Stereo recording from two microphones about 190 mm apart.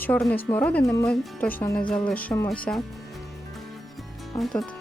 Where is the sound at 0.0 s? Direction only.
5° left (ahead or behind).